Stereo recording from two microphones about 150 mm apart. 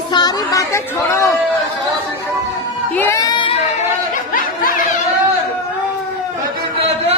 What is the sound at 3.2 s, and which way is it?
Crowd, 30° left (ahead or behind).